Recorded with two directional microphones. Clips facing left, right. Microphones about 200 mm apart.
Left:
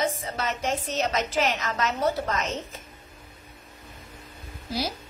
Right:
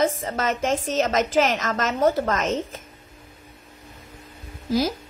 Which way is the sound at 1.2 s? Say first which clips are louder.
Right 5 dB; 90° right.